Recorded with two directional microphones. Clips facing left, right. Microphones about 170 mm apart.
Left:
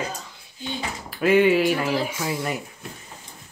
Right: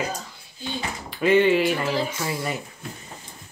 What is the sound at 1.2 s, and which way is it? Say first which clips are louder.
Speech: left 1 dB; 5° left (ahead or behind).